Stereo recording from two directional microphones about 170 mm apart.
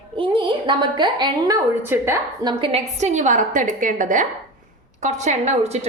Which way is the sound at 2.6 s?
40° right (ahead or behind).